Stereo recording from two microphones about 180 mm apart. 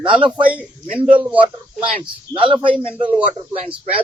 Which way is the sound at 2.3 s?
20° right (ahead or behind).